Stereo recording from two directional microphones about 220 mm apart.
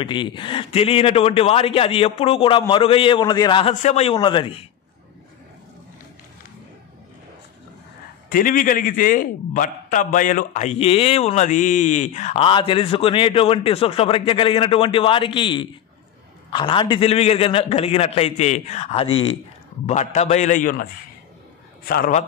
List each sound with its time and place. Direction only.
0.0 s a man's voice: 20° left (ahead or behind)
8.3 s a man's voice: 40° left (ahead or behind)